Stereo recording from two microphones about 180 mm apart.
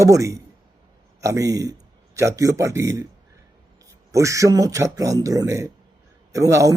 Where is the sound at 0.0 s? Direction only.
15° right (ahead or behind).